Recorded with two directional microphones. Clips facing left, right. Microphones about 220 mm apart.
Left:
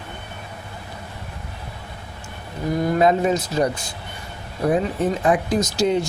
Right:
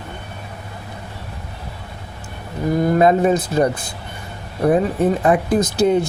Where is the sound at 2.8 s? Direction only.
50° right (ahead or behind).